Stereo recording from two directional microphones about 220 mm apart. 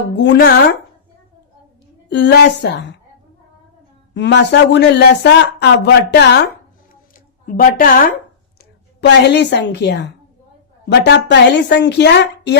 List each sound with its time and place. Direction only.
0.2 s speech: 50° left (ahead or behind)
2.0 s speech: 50° left (ahead or behind)
4.1 s speech: 55° left (ahead or behind)
7.4 s a woman's voice: 40° left (ahead or behind)
8.5 s a woman's voice: 50° left (ahead or behind)